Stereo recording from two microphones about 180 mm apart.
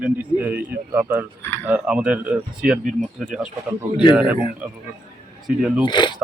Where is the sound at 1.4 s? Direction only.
15° left (ahead or behind).